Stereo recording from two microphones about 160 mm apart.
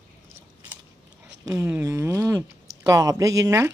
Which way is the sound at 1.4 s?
15° right (ahead or behind).